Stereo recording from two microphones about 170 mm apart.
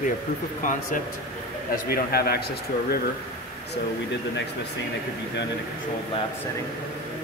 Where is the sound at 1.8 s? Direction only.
65° left (ahead or behind).